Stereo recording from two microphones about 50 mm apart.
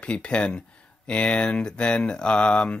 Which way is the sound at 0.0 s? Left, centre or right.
Left.